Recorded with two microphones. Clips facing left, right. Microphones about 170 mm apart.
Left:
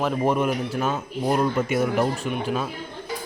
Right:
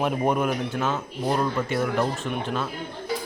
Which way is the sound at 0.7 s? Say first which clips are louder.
Left 1 dB; 10° left (ahead or behind).